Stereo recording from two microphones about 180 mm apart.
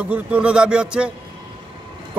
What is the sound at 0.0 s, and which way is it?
A man's voice, 10° right (ahead or behind).